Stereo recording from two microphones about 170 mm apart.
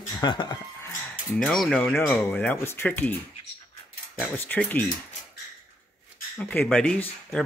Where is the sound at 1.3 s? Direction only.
5° left (ahead or behind).